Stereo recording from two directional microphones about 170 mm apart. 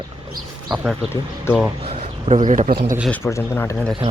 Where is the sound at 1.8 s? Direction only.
45° right (ahead or behind).